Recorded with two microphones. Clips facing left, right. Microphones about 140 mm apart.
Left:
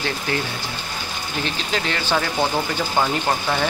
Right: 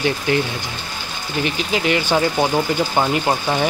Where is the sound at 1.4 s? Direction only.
15° right (ahead or behind).